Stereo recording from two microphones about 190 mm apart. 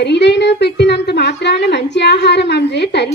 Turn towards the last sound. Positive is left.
turn(degrees=65)  # may be behind; listen again after turning